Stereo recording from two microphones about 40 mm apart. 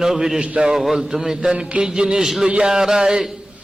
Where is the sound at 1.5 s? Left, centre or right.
Right.